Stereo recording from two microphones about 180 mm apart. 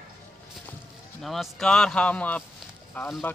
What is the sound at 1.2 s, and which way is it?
A man's voice, centre (ahead or behind).